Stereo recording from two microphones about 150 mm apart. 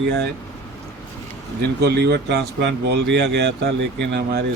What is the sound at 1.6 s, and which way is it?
Speech, 90° right.